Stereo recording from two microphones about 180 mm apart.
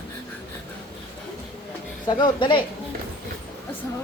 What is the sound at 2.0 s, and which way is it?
Speech, 25° left (ahead or behind).